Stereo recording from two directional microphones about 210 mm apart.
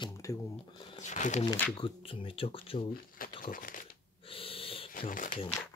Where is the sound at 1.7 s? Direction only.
25° left (ahead or behind).